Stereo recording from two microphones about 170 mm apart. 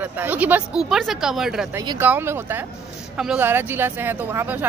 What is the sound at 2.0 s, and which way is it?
Speech, 15° right (ahead or behind).